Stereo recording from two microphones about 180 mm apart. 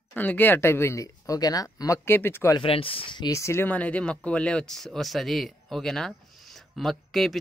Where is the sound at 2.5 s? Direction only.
30° left (ahead or behind).